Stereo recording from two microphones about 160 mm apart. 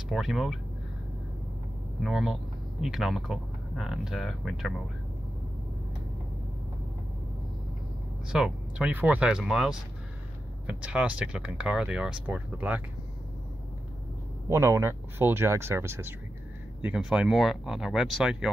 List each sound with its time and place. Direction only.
0.1 s speech: 5° right (ahead or behind)
2.0 s speech: centre (ahead or behind)
8.3 s speech: 5° right (ahead or behind)
14.5 s speech: 15° right (ahead or behind)